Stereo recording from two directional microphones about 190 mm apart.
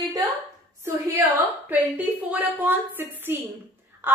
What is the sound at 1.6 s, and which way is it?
Speech, 10° right (ahead or behind).